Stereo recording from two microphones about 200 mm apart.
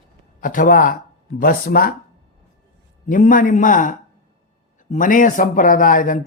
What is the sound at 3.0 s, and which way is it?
A man's voice, 40° left (ahead or behind).